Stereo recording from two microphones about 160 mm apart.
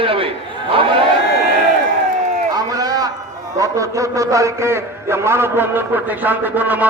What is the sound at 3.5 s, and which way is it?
A man's voice, 20° right (ahead or behind).